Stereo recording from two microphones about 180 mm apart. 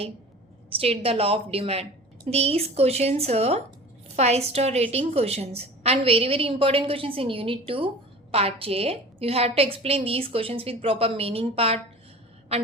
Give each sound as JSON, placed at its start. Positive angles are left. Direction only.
{"t": 0.7, "sound": "a woman's voice", "side_deg": -35}